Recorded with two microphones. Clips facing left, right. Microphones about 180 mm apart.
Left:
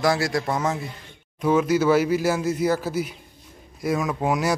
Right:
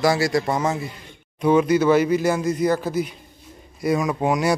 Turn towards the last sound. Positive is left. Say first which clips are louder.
# right 3 dB
turn(degrees=0)  # may be behind; listen again after turning